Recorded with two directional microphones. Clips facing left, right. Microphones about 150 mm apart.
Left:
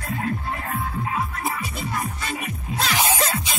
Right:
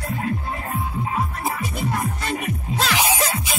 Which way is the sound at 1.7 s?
50° right (ahead or behind).